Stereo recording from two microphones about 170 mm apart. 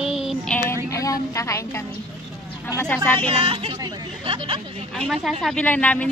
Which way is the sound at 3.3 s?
30° right (ahead or behind).